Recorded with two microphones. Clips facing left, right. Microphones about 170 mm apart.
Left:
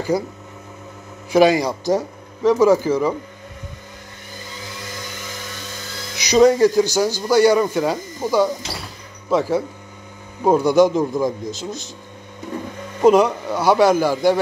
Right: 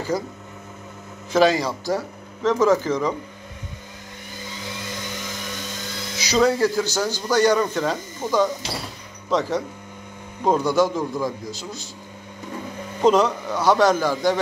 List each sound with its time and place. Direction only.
0.1 s speech: 10° left (ahead or behind)
1.3 s speech: 15° left (ahead or behind)
6.1 s speech: 15° left (ahead or behind)
13.0 s speech: 10° left (ahead or behind)